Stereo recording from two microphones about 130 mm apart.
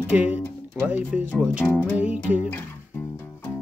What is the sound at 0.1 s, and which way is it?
Speech, 10° right (ahead or behind).